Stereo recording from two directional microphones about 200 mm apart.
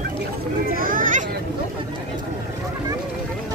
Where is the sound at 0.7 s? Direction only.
45° right (ahead or behind).